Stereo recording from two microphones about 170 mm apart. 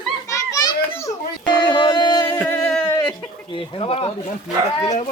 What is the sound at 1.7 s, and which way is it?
Music, 30° left (ahead or behind).